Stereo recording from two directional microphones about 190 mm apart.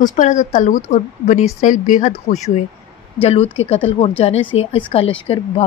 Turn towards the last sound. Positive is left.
turn(degrees=30)  # may be behind; listen again after turning